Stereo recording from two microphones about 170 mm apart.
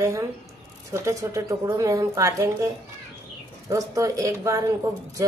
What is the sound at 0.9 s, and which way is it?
A woman's voice, 15° right (ahead or behind).